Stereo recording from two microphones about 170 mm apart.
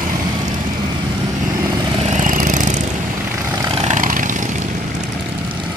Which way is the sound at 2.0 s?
45° right (ahead or behind).